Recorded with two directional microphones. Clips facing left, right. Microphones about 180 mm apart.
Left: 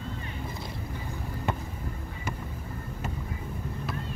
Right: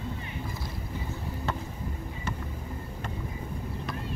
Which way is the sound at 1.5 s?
15° left (ahead or behind).